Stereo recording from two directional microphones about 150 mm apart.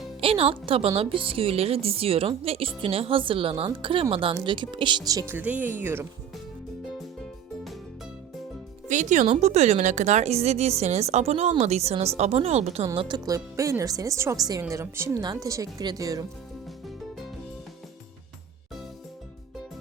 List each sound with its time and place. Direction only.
0.2 s a woman's voice: 40° right (ahead or behind); by 6.1 s 15° right (ahead or behind)
8.9 s a woman's voice: 55° right (ahead or behind)
13.0 s speech: 30° right (ahead or behind)